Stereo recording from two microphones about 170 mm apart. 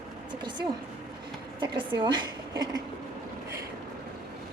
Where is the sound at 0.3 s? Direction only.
25° right (ahead or behind).